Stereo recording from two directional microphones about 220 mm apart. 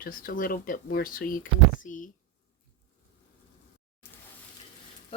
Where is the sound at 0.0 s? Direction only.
40° left (ahead or behind).